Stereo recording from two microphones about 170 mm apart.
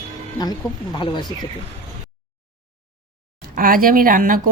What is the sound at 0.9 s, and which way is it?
Speech, 25° left (ahead or behind).